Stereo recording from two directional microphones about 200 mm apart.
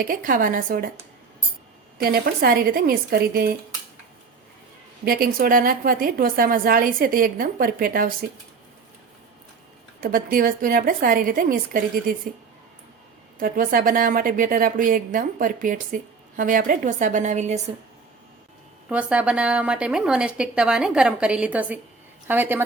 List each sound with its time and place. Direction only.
0.0 s a woman's voice: 45° right (ahead or behind)
2.0 s a woman's voice: 50° right (ahead or behind)
5.0 s a woman's voice: 45° right (ahead or behind)
10.0 s a woman's voice: 45° right (ahead or behind)
13.4 s a woman's voice: 45° right (ahead or behind)
18.9 s a woman's voice: 5° right (ahead or behind)